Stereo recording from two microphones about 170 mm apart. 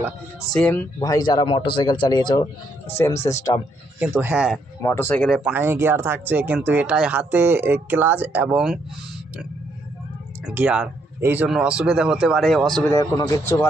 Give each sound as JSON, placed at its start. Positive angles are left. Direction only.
{"t": 0.5, "sound": "speech", "side_deg": 10}
{"t": 4.0, "sound": "speech", "side_deg": -10}
{"t": 4.8, "sound": "speech", "side_deg": 15}
{"t": 5.5, "sound": "speech", "side_deg": -15}
{"t": 10.5, "sound": "speech", "side_deg": -10}
{"t": 12.8, "sound": "speech", "side_deg": 20}